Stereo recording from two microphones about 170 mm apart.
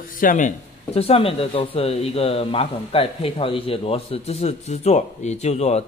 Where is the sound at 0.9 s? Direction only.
35° left (ahead or behind).